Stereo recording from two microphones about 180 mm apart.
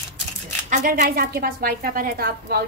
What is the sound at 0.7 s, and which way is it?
A woman's voice, 45° right (ahead or behind).